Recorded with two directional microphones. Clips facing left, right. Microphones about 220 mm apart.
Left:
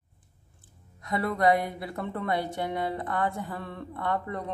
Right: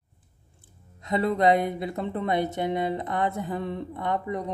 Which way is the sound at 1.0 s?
20° right (ahead or behind).